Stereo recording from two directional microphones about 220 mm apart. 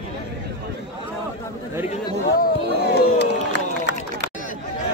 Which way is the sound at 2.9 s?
50° left (ahead or behind).